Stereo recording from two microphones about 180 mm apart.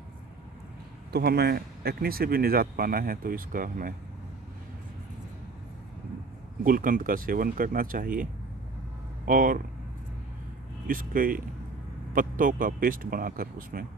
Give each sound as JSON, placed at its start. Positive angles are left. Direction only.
{"t": 1.1, "sound": "speech", "side_deg": -65}
{"t": 6.6, "sound": "speech", "side_deg": -50}
{"t": 10.9, "sound": "speech", "side_deg": -50}